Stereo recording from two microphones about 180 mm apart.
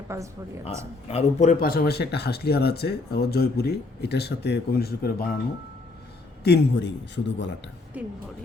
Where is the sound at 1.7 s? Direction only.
60° left (ahead or behind).